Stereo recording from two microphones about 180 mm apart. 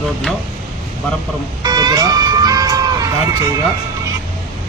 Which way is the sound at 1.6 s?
20° right (ahead or behind).